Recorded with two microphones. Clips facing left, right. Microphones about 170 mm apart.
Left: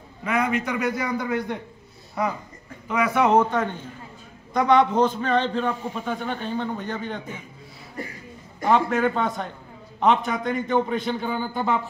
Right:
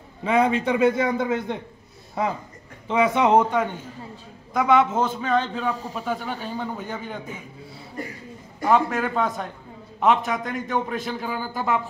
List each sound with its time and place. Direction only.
0.2 s a man's voice: 30° right (ahead or behind)
2.9 s a man's voice: 25° right (ahead or behind); by 7.2 s 5° right (ahead or behind)
8.6 s a man's voice: centre (ahead or behind)